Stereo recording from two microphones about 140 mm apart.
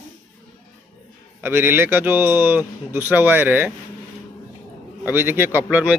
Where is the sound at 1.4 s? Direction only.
15° right (ahead or behind).